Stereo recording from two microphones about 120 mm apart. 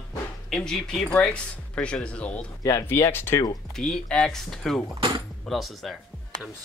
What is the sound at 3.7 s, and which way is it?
Speech, 5° left (ahead or behind).